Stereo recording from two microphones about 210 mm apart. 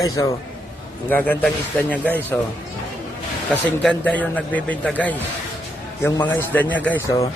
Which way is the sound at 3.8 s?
5° left (ahead or behind).